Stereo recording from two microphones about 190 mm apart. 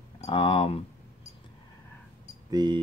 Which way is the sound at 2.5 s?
20° right (ahead or behind).